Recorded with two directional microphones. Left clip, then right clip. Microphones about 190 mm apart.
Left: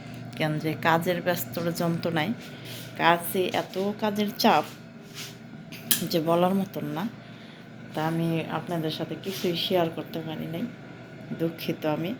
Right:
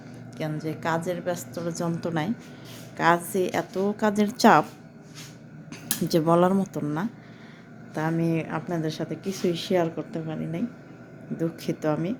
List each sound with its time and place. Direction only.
0.3 s a woman's voice: 5° right (ahead or behind); by 4.6 s 45° right (ahead or behind)
6.1 s a woman's voice: 40° right (ahead or behind)